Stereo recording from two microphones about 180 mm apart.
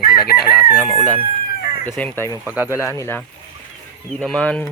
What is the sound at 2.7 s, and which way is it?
Speech, 15° left (ahead or behind).